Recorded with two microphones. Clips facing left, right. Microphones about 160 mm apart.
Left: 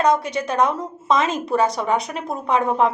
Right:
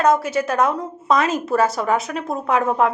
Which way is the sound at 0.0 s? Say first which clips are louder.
Right 2 dB; 5° right (ahead or behind).